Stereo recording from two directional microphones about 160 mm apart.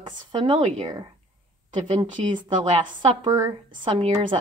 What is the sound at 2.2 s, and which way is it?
Speech, 40° right (ahead or behind).